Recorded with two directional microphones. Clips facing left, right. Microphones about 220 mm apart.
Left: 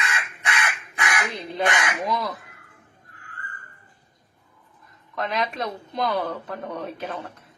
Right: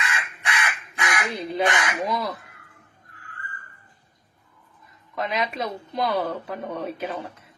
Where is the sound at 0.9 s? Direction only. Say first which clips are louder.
Even; 20° right (ahead or behind).